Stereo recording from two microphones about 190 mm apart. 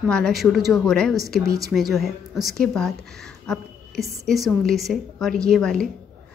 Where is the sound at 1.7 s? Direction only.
Centre (ahead or behind).